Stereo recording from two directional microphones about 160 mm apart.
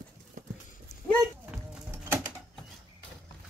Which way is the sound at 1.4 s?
10° right (ahead or behind).